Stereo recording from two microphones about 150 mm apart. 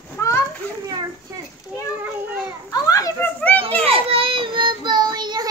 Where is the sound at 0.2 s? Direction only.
20° left (ahead or behind).